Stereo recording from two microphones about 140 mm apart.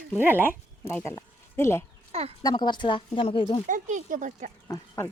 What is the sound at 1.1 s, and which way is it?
Speech, 20° left (ahead or behind).